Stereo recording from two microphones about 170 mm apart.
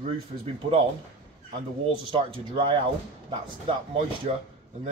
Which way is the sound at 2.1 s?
30° right (ahead or behind).